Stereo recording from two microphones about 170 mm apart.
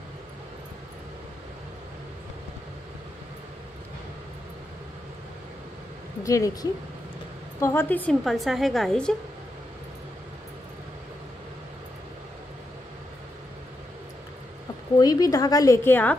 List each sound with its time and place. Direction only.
6.2 s a woman's voice: 20° left (ahead or behind); by 9.1 s 5° left (ahead or behind)
15.0 s a woman's voice: 20° left (ahead or behind)